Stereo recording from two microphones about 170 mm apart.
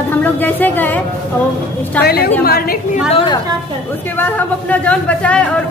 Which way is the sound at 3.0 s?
30° left (ahead or behind).